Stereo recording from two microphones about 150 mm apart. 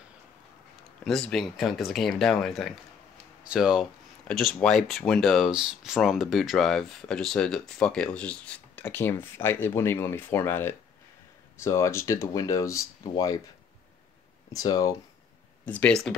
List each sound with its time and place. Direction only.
1.0 s speech: centre (ahead or behind); by 13.4 s 25° left (ahead or behind)
14.5 s speech: 25° left (ahead or behind)
15.6 s speech: 10° left (ahead or behind)